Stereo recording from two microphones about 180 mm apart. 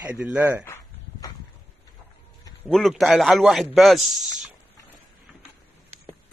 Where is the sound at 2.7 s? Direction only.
Centre (ahead or behind).